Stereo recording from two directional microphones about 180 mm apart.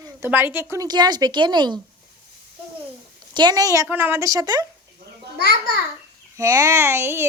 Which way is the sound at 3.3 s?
25° right (ahead or behind).